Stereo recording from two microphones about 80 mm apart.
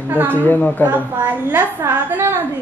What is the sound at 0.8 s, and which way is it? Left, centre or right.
A woman's voice, right.